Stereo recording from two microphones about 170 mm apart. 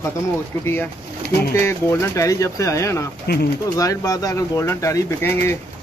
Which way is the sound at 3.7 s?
20° left (ahead or behind).